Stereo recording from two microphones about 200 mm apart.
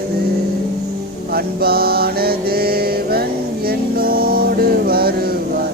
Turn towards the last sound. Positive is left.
turn(degrees=-50)  # may be behind; listen again after turning